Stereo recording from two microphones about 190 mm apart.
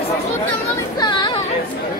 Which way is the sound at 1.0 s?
25° left (ahead or behind).